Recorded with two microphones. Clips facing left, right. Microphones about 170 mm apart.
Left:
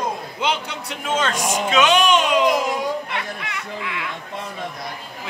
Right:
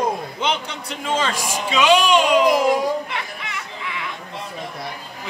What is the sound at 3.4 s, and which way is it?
Speech, centre (ahead or behind).